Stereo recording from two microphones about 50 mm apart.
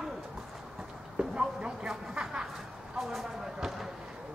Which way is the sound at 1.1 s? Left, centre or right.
Centre.